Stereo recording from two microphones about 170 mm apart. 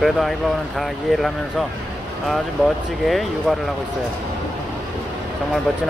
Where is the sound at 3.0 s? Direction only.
Centre (ahead or behind).